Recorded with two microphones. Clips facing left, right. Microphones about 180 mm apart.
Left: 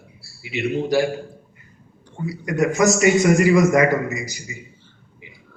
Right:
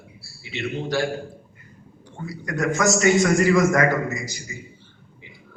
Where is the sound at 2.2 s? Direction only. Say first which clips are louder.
Left 4 dB; 15° left (ahead or behind).